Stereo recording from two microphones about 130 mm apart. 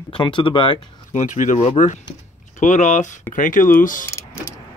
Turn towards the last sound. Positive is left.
turn(degrees=20)  # may be behind; listen again after turning